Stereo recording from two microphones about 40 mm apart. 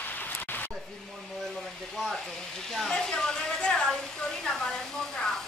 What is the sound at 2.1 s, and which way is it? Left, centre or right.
Hair dryer, centre.